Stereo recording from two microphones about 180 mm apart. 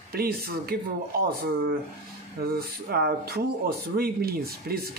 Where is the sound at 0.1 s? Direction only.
60° right (ahead or behind).